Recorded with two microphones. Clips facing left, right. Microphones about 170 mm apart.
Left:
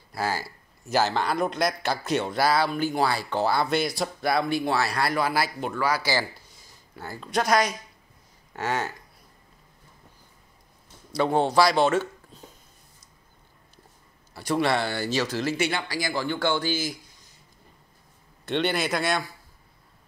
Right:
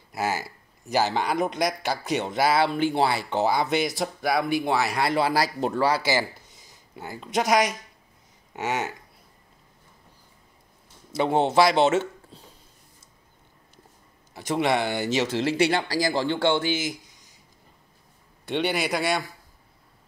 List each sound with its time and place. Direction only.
0.1 s a man's voice: 20° right (ahead or behind)
11.1 s speech: 20° right (ahead or behind)
14.3 s speech: 20° right (ahead or behind)
18.4 s a man's voice: 10° right (ahead or behind)